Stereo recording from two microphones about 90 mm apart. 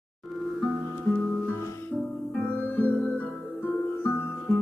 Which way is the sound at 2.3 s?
15° left (ahead or behind).